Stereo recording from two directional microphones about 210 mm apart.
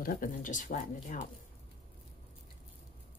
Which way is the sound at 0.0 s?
40° left (ahead or behind).